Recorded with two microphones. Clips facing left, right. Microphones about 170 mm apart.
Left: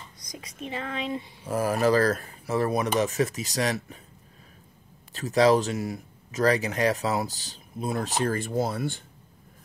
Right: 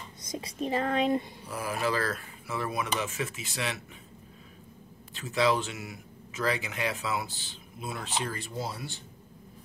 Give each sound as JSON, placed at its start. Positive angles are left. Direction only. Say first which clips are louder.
{"t": 0.2, "sound": "speech", "louder": "right 5 dB", "side_deg": -30}
{"t": 1.5, "sound": "speech", "louder": "left 8 dB", "side_deg": 40}
{"t": 5.1, "sound": "speech", "louder": "left 7 dB", "side_deg": 40}